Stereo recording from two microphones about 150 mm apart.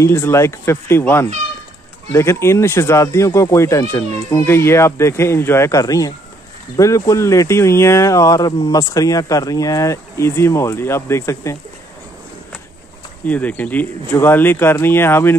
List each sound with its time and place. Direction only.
0.0 s speech: 15° left (ahead or behind)
13.2 s speech: 10° left (ahead or behind)